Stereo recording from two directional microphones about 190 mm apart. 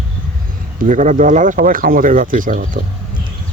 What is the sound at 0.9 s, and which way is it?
Speech, 40° right (ahead or behind).